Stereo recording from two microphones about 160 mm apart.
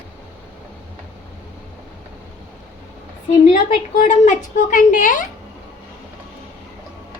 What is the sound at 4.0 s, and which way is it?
A woman's voice, 55° left (ahead or behind).